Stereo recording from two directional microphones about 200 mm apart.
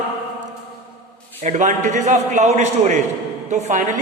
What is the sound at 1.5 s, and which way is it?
A man's voice, 35° right (ahead or behind).